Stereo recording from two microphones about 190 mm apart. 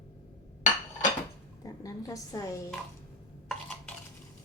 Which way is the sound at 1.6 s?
20° left (ahead or behind).